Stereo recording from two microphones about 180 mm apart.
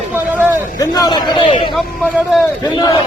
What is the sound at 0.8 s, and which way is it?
Speech, 20° left (ahead or behind).